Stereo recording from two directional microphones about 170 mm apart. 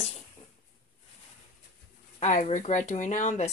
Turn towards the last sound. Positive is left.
turn(degrees=45)  # may be behind; listen again after turning